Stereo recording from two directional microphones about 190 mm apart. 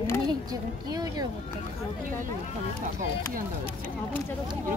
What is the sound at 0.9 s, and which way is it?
Speech, 20° right (ahead or behind).